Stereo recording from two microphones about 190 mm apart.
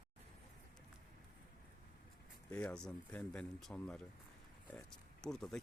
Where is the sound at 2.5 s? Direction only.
5° left (ahead or behind).